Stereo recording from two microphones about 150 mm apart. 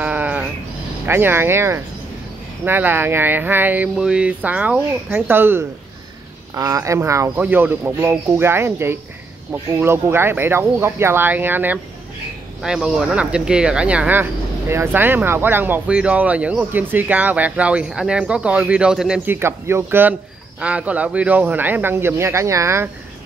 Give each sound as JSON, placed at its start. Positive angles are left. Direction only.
{"t": 0.0, "sound": "sheep", "side_deg": -10}
{"t": 1.0, "sound": "speech", "side_deg": -15}